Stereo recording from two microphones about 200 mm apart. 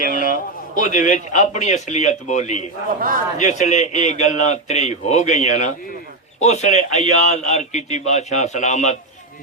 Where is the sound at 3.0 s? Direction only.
45° right (ahead or behind).